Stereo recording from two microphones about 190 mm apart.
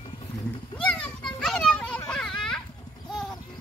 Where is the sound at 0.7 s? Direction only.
5° left (ahead or behind).